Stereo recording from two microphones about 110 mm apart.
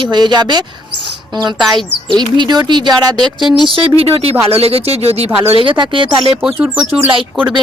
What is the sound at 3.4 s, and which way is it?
Speech, centre (ahead or behind).